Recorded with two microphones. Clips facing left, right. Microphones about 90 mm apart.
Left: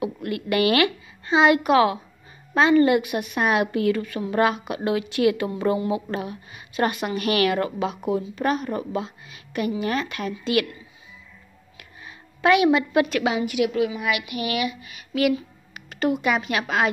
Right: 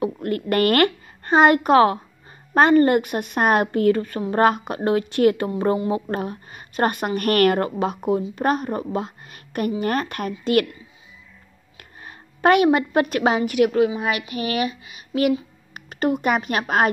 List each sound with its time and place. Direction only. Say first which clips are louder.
0.0 s a woman's voice: right 4 dB; 40° right (ahead or behind)
5.5 s a woman's voice: right 2 dB; 30° right (ahead or behind)
12.0 s a woman's voice: right 3 dB; 45° right (ahead or behind)
13.8 s a woman's voice: right 2 dB; 35° right (ahead or behind)